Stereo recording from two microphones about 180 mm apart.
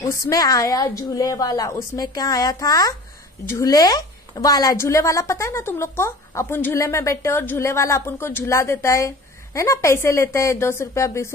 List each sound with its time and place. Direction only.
0.1 s a woman's voice: 20° left (ahead or behind)